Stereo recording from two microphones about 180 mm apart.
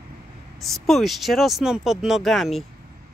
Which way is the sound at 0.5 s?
Centre (ahead or behind).